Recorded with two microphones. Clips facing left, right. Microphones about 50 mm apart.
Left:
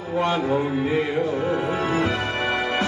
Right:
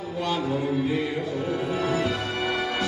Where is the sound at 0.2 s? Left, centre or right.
Left.